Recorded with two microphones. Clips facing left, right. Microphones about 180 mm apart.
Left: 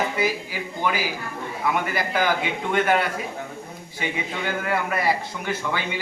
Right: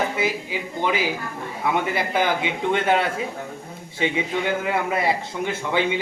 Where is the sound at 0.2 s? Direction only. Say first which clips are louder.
Even; 20° right (ahead or behind).